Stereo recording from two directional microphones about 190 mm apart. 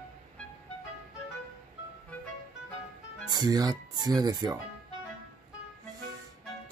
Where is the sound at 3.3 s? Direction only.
20° right (ahead or behind).